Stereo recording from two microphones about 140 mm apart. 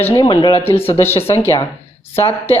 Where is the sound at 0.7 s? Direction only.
45° left (ahead or behind).